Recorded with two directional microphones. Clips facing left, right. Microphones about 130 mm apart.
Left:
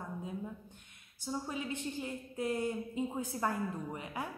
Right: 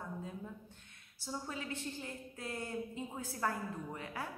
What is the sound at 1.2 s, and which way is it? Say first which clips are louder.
A woman's voice: left 4 dB; 20° left (ahead or behind).